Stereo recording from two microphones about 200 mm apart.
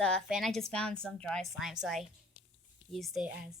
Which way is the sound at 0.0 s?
Centre (ahead or behind).